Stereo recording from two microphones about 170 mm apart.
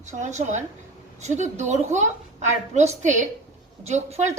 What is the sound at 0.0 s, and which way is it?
A woman's voice, 45° right (ahead or behind).